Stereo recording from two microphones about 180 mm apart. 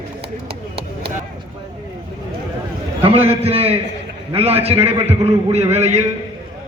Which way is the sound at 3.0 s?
30° right (ahead or behind).